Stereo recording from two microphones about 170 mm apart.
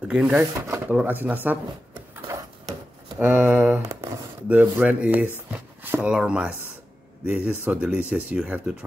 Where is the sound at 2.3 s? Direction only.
15° right (ahead or behind).